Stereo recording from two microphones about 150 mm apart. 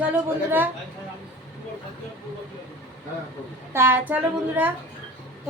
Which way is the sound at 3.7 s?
15° right (ahead or behind).